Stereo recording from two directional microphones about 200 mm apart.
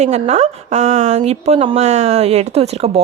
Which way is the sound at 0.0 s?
35° right (ahead or behind).